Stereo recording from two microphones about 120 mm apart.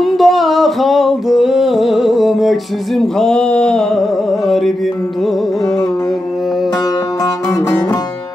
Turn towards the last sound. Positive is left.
turn(degrees=30)  # may be behind; listen again after turning